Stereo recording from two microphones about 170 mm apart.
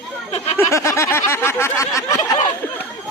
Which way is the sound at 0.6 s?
15° left (ahead or behind).